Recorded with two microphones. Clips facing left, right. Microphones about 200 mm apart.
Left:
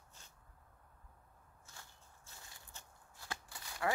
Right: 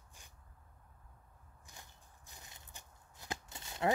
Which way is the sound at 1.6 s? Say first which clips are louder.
Right 2 dB; 15° right (ahead or behind).